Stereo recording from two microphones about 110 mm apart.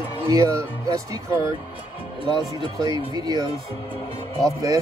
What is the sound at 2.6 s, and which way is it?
Speech, 35° right (ahead or behind).